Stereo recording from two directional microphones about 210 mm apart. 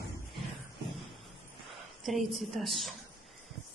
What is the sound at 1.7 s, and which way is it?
A woman's voice, centre (ahead or behind).